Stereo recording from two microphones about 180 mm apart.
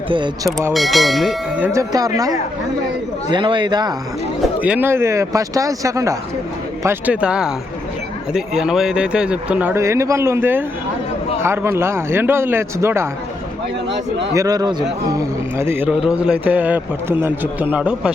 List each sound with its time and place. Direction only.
0.1 s speech: 25° right (ahead or behind)
0.7 s speech: centre (ahead or behind); by 3.9 s 25° right (ahead or behind)
4.6 s speech: 10° right (ahead or behind)
13.9 s speech: 80° right
14.3 s speech: 20° right (ahead or behind)